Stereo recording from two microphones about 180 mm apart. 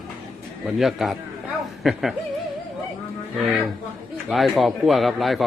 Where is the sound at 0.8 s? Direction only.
Centre (ahead or behind).